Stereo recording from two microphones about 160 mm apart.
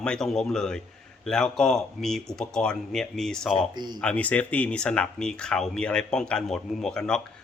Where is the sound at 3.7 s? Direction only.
25° right (ahead or behind).